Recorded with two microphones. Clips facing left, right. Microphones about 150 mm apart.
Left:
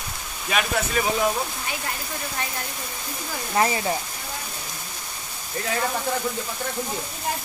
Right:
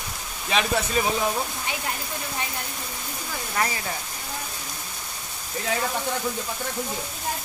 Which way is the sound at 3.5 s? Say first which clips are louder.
Left 6 dB; 25° left (ahead or behind).